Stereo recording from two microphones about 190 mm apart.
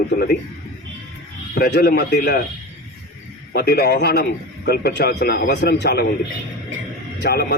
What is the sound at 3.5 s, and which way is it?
A man's voice, 55° left (ahead or behind).